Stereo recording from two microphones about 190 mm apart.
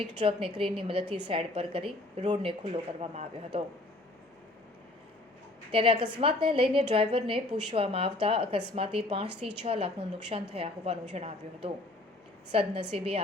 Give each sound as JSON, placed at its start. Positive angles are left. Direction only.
{"t": 0.0, "sound": "speech", "side_deg": -30}
{"t": 5.7, "sound": "a woman's voice", "side_deg": -25}